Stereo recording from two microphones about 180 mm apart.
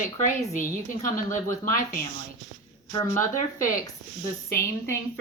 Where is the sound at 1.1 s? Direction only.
45° left (ahead or behind).